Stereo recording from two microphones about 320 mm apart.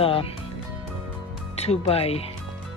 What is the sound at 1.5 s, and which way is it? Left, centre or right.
Speech, centre.